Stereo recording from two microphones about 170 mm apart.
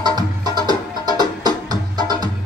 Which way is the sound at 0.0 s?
25° right (ahead or behind).